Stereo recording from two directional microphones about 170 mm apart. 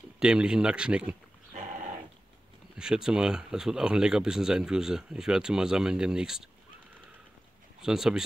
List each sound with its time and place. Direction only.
0.2 s speech: 5° right (ahead or behind)
1.5 s dog: 45° right (ahead or behind)
2.8 s speech: 5° right (ahead or behind)
7.8 s speech: 5° right (ahead or behind)